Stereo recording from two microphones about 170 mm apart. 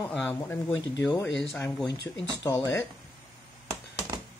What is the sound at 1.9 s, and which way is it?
Speech, 90° left.